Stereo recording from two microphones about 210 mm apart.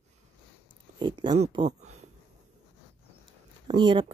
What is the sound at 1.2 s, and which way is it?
Speech, 20° right (ahead or behind).